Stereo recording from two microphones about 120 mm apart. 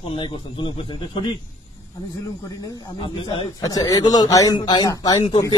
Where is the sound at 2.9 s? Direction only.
45° left (ahead or behind).